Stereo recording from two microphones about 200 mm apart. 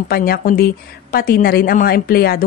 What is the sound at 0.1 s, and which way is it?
A woman's voice, 50° left (ahead or behind).